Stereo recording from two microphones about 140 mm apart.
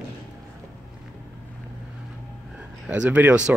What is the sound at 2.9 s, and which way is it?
Speech, 10° right (ahead or behind).